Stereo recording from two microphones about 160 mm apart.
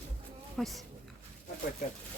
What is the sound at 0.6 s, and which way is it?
Speech, centre (ahead or behind).